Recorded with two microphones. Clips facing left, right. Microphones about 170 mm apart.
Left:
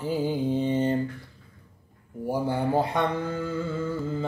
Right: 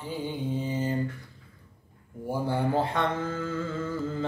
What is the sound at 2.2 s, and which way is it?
Mantra, 15° left (ahead or behind).